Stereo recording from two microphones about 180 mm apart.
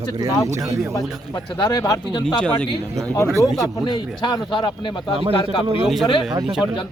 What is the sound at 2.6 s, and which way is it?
Speech, 20° right (ahead or behind).